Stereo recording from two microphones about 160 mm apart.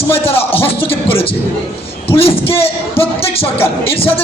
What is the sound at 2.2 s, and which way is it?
Speech, 35° left (ahead or behind).